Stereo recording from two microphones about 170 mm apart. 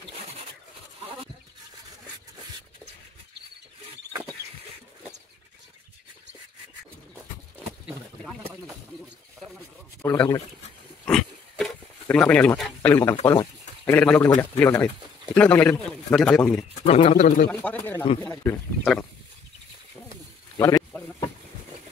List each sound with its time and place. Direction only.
10.0 s a man's voice: 15° left (ahead or behind)
11.1 s pig: centre (ahead or behind)
13.1 s speech: 20° left (ahead or behind)
13.9 s a man's voice: 5° left (ahead or behind)
16.8 s speech: 40° left (ahead or behind)
17.5 s a man's voice: 10° left (ahead or behind)
20.5 s a sound: 20° left (ahead or behind)